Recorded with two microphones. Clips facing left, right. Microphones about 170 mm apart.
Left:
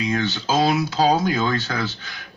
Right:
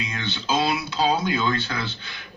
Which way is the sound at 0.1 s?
45° left (ahead or behind).